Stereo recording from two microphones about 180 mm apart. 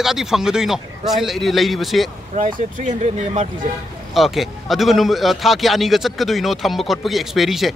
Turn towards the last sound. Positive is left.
turn(degrees=0)  # may be behind; listen again after turning